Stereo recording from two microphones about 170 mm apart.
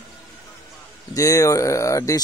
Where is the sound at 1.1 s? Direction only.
20° left (ahead or behind).